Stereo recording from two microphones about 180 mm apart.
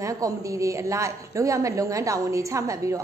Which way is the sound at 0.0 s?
20° right (ahead or behind).